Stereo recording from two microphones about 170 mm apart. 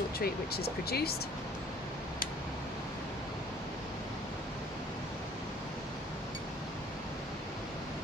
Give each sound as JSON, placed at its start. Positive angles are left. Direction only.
{"t": 0.2, "sound": "speech", "side_deg": 65}